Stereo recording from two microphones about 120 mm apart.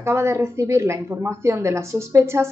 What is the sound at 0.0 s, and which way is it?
A woman's voice, 25° right (ahead or behind).